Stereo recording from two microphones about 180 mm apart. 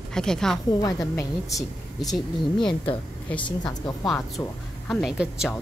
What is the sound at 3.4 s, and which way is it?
Speech, 25° left (ahead or behind).